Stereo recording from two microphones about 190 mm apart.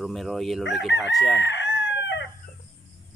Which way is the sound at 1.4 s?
70° left (ahead or behind).